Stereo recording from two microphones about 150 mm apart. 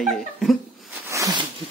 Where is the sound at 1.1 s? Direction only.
20° right (ahead or behind).